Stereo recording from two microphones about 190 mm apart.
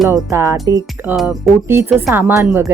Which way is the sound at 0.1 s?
15° right (ahead or behind).